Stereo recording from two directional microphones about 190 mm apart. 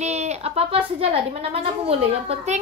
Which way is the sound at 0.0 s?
35° right (ahead or behind).